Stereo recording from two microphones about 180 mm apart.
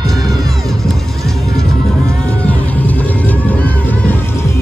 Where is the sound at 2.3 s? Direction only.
10° left (ahead or behind).